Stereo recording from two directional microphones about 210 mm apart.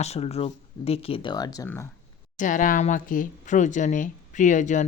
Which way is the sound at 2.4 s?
35° left (ahead or behind).